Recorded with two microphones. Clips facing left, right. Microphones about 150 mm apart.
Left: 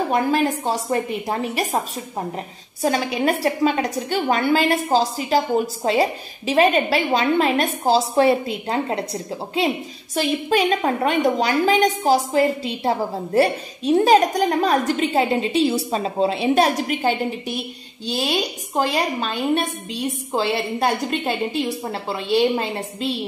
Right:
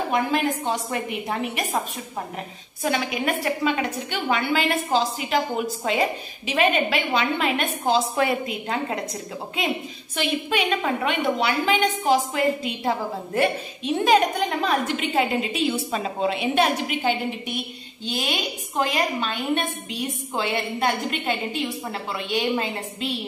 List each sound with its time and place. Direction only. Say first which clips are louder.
0.1 s a woman's voice: left 2 dB; 35° left (ahead or behind)